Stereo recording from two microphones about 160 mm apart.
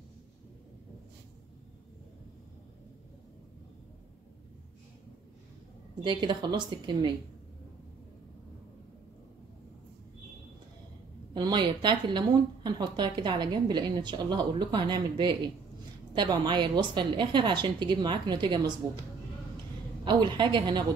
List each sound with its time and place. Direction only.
6.0 s speech: 30° right (ahead or behind)
11.3 s speech: 25° right (ahead or behind)
20.1 s speech: 30° right (ahead or behind)